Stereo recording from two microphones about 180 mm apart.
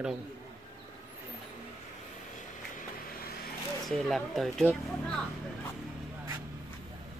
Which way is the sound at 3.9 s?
Centre (ahead or behind).